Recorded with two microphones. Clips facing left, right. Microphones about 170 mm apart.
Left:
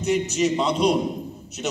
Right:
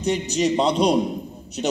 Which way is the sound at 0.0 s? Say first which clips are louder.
Even; 35° right (ahead or behind).